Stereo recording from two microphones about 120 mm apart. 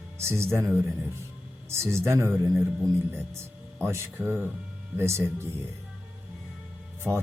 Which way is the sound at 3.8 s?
20° right (ahead or behind).